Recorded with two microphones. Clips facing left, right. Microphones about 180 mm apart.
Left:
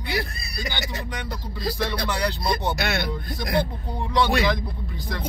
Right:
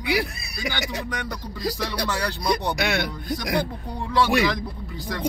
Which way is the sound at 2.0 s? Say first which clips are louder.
Right 3 dB; 15° left (ahead or behind).